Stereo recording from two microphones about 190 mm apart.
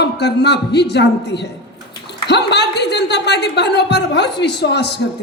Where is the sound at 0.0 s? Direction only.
60° left (ahead or behind).